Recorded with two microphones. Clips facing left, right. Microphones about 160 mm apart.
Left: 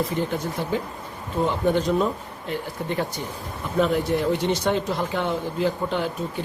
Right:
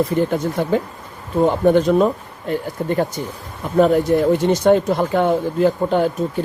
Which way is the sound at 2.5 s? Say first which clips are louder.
Right 7 dB; 45° right (ahead or behind).